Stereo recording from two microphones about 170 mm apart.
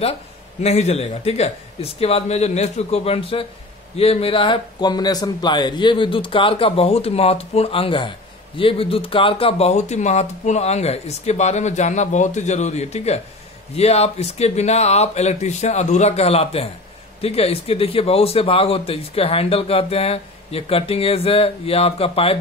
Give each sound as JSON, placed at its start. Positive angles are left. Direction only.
{"t": 0.6, "sound": "a man's voice", "side_deg": 40}